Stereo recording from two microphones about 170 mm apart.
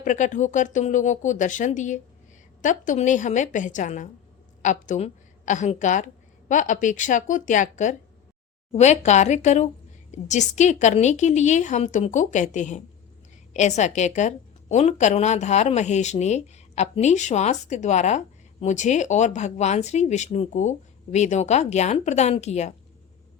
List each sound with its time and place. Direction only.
0.0 s a woman's voice: 45° left (ahead or behind)